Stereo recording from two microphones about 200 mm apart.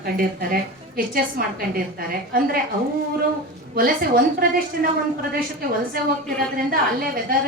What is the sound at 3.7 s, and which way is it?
Speech, 45° right (ahead or behind).